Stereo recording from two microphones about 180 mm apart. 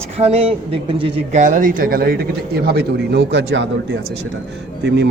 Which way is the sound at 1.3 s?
45° right (ahead or behind).